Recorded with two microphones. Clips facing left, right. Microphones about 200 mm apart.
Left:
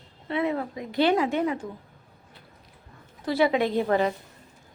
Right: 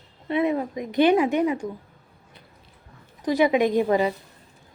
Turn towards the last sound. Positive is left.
turn(degrees=-10)  # may be behind; listen again after turning